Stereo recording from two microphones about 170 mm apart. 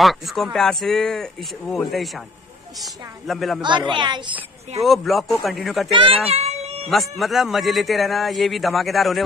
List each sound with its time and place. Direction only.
0.0 s a man's voice: centre (ahead or behind)
3.6 s a child's voice: 30° right (ahead or behind)
4.8 s a man's voice: centre (ahead or behind)
5.9 s speech: 35° right (ahead or behind)
6.9 s a man's voice: centre (ahead or behind)